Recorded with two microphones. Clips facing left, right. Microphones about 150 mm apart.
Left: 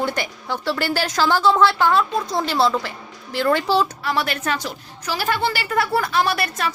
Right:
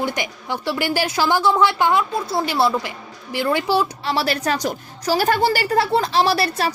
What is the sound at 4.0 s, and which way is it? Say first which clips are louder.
A woman's voice: right 2 dB; 30° right (ahead or behind).